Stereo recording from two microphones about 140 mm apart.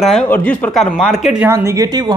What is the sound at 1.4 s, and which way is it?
Speech, 20° right (ahead or behind).